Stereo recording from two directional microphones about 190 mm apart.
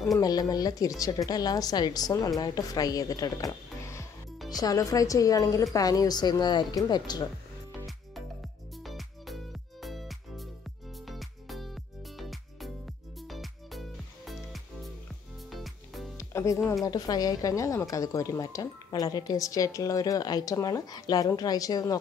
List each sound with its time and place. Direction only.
0.2 s speech: 20° left (ahead or behind)
8.7 s music: centre (ahead or behind)
16.2 s music: 15° left (ahead or behind)
16.8 s speech: 20° left (ahead or behind)